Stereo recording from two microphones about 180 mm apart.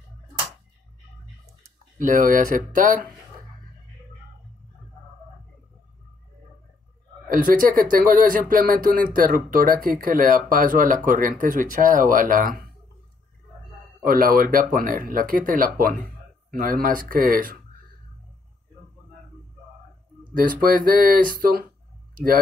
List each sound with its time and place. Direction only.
2.0 s speech: 45° right (ahead or behind)
7.2 s speech: 50° right (ahead or behind)
14.0 s speech: 50° right (ahead or behind)
20.3 s speech: 50° right (ahead or behind)